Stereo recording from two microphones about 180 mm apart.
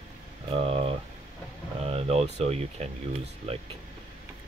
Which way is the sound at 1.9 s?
35° right (ahead or behind).